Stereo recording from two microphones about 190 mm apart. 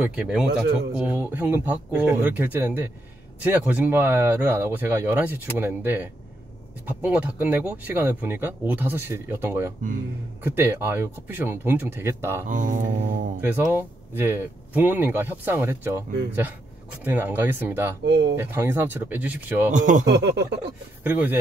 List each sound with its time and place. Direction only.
0.0 s speech: 5° right (ahead or behind)
12.4 s mantra: 40° right (ahead or behind)
13.4 s speech: 10° right (ahead or behind)
17.0 s speech: 10° right (ahead or behind)
18.0 s speech: 65° right (ahead or behind)
18.3 s speech: 15° right (ahead or behind)
19.7 s speech: 40° right (ahead or behind)
20.1 s a sound: 65° right (ahead or behind)
21.0 s speech: 10° right (ahead or behind)